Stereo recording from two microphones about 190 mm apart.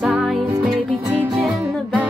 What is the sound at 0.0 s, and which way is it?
Music, centre (ahead or behind).